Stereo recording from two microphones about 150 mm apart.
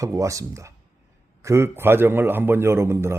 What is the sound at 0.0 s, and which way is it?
Speech, 20° right (ahead or behind).